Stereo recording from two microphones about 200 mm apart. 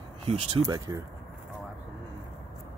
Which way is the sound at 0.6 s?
20° right (ahead or behind).